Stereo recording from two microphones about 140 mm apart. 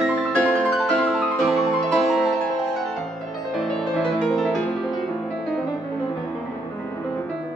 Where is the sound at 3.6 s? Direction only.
5° left (ahead or behind).